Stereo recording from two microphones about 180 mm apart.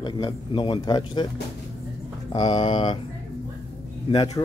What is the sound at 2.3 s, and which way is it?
Speech, 25° left (ahead or behind).